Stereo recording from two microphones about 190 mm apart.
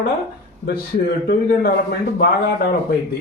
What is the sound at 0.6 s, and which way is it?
A man's voice, 50° left (ahead or behind).